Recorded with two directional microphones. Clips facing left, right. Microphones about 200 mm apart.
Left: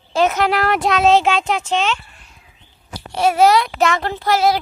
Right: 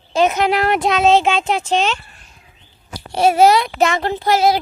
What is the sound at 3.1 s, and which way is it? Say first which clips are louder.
Speech: right 1 dB; 30° right (ahead or behind).